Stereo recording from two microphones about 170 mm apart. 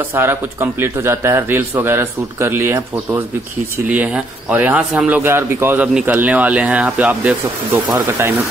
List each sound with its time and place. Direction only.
0.1 s a man's voice: 15° right (ahead or behind)